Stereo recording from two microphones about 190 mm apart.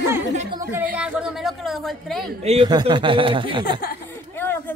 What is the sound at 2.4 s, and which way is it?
Speech, 35° right (ahead or behind).